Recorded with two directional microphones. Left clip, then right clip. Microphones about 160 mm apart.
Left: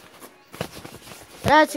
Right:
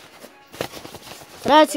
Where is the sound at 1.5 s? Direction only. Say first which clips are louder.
Right 2 dB; 30° right (ahead or behind).